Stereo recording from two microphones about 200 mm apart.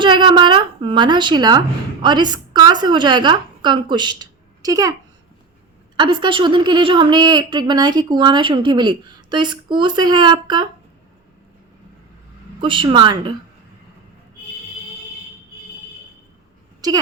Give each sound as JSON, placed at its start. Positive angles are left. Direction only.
{"t": 0.0, "sound": "a woman's voice", "side_deg": -25}
{"t": 6.0, "sound": "a woman's voice", "side_deg": -20}
{"t": 12.6, "sound": "a woman's voice", "side_deg": -25}